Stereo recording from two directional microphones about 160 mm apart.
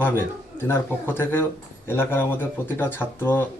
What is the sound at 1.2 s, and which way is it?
Speech, 15° left (ahead or behind).